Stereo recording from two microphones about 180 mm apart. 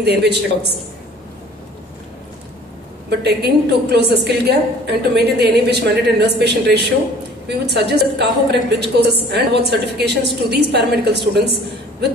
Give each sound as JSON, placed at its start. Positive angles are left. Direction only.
{"t": 0.0, "sound": "a woman's voice", "side_deg": -65}
{"t": 3.1, "sound": "a woman's voice", "side_deg": -65}